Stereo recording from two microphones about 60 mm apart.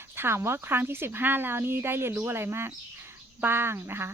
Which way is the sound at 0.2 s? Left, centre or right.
Right.